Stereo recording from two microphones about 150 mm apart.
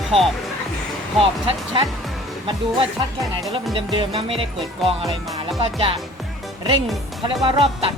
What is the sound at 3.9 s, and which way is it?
Speech, 35° right (ahead or behind).